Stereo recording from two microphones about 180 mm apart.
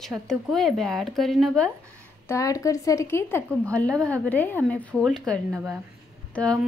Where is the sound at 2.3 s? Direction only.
20° left (ahead or behind).